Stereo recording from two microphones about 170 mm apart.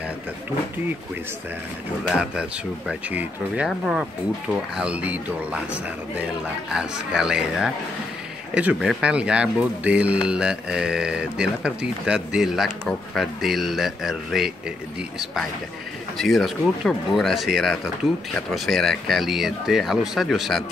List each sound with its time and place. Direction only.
2.0 s speech: 5° right (ahead or behind)
16.2 s speech: centre (ahead or behind)